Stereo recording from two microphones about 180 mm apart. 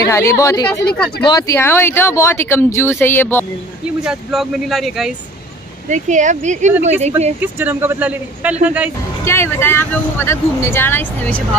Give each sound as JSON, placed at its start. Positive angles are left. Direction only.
{"t": 0.1, "sound": "speech", "side_deg": 15}
{"t": 4.0, "sound": "speech", "side_deg": 0}
{"t": 5.9, "sound": "speech", "side_deg": -45}
{"t": 7.3, "sound": "speech", "side_deg": -10}
{"t": 9.2, "sound": "speech", "side_deg": 15}